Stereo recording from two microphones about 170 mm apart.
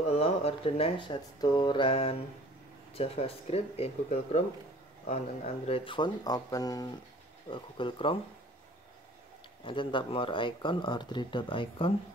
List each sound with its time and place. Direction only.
0.0 s speech: 35° left (ahead or behind)
9.7 s speech: 30° left (ahead or behind)